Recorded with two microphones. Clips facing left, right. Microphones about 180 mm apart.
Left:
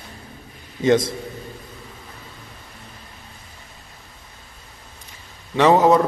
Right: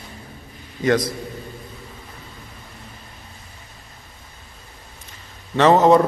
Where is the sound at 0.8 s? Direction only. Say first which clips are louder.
Left 2 dB; 25° left (ahead or behind).